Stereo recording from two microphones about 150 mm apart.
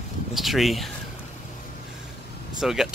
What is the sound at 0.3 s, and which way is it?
Speech, centre (ahead or behind).